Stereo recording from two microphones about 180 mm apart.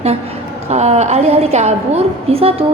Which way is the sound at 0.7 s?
40° right (ahead or behind).